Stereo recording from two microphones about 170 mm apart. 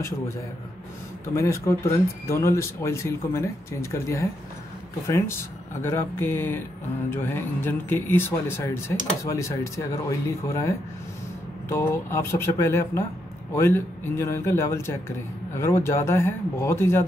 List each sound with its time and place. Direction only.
1.3 s speech: 15° left (ahead or behind)
11.7 s speech: 15° left (ahead or behind)